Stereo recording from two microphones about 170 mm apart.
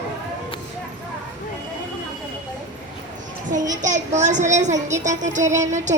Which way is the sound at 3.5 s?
50° right (ahead or behind).